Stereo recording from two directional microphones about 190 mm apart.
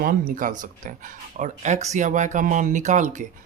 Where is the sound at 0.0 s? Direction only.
50° right (ahead or behind).